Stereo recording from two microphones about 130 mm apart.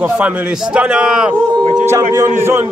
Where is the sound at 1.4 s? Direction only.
5° left (ahead or behind).